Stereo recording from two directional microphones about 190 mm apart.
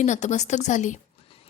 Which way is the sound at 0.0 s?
40° left (ahead or behind).